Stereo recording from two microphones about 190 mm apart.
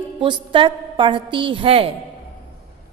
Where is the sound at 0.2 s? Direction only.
25° right (ahead or behind).